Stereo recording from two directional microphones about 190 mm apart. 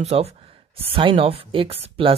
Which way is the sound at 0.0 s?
35° right (ahead or behind).